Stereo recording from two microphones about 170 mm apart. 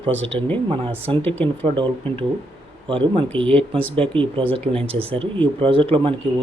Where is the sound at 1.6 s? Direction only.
30° right (ahead or behind).